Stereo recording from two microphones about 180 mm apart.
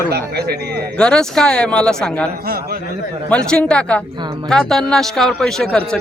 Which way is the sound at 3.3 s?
5° left (ahead or behind).